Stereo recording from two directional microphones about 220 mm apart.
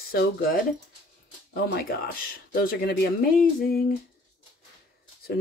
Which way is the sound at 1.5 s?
45° left (ahead or behind).